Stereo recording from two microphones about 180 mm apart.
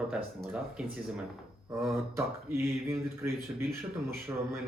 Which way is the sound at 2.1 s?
15° right (ahead or behind).